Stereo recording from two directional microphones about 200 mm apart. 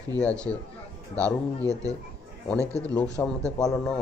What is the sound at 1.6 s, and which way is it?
Speech, 15° right (ahead or behind).